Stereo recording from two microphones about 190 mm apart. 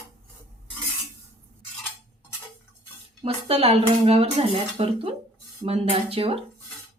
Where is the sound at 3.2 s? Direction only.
30° right (ahead or behind).